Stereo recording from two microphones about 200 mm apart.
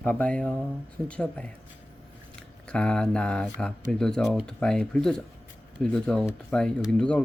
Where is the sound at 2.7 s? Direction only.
5° left (ahead or behind).